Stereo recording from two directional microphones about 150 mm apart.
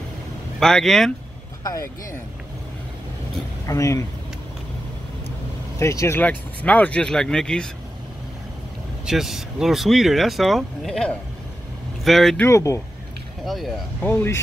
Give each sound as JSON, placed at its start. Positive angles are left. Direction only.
{"t": 0.6, "sound": "speech", "side_deg": 5}
{"t": 1.6, "sound": "speech", "side_deg": 25}
{"t": 3.6, "sound": "speech", "side_deg": 20}
{"t": 5.8, "sound": "speech", "side_deg": 20}
{"t": 9.0, "sound": "speech", "side_deg": 0}
{"t": 12.4, "sound": "speech", "side_deg": 20}
{"t": 13.5, "sound": "speech", "side_deg": 0}
{"t": 14.0, "sound": "speech", "side_deg": 15}